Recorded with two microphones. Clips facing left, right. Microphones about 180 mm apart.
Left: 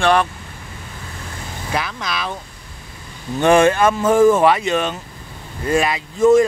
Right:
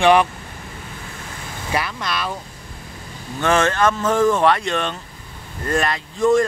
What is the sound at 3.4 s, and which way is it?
Speech, 15° left (ahead or behind).